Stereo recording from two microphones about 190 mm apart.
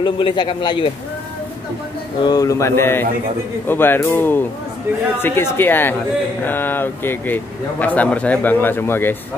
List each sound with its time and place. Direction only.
0.0 s a man's voice: 25° left (ahead or behind)
2.2 s speech: 20° left (ahead or behind)